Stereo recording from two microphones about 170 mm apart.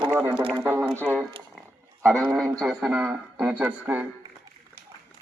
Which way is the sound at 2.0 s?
5° left (ahead or behind).